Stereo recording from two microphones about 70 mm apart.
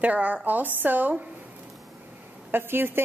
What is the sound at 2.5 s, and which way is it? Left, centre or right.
Speech, right.